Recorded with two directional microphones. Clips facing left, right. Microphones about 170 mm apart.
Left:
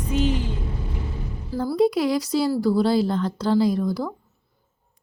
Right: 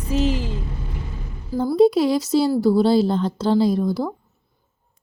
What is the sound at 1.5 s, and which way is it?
Speech, 25° right (ahead or behind).